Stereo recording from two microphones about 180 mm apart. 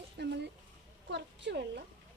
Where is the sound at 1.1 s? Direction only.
85° right.